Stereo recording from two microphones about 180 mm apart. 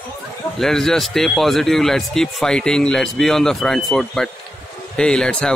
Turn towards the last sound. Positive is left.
turn(degrees=5)  # may be behind; listen again after turning